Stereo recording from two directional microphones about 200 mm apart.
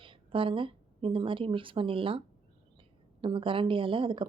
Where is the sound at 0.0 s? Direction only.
25° right (ahead or behind).